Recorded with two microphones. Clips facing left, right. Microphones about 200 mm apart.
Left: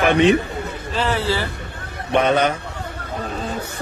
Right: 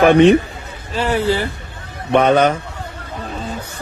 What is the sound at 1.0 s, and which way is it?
Speech, 15° right (ahead or behind).